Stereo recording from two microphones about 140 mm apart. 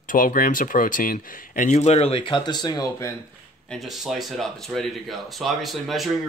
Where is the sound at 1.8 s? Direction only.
50° left (ahead or behind); by 3.2 s 25° left (ahead or behind).